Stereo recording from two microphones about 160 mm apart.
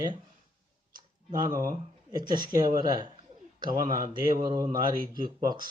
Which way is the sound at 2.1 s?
25° right (ahead or behind).